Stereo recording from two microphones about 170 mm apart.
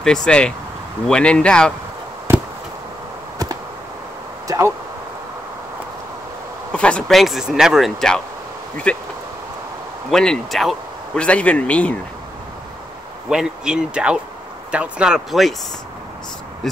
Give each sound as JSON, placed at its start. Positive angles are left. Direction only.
{"t": 0.0, "sound": "speech", "side_deg": 5}
{"t": 4.5, "sound": "speech", "side_deg": -15}
{"t": 6.7, "sound": "speech", "side_deg": 5}
{"t": 10.0, "sound": "speech", "side_deg": 5}
{"t": 13.3, "sound": "speech", "side_deg": -5}